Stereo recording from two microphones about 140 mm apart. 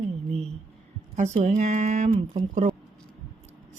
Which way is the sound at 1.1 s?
50° right (ahead or behind).